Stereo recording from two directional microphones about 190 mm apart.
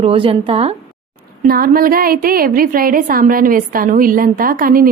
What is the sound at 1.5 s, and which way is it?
A woman's voice, 50° right (ahead or behind).